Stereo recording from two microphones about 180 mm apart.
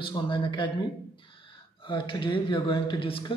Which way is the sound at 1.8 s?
30° left (ahead or behind).